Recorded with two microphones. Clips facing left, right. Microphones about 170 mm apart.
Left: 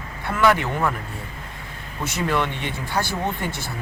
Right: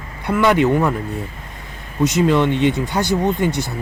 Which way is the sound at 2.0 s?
20° right (ahead or behind).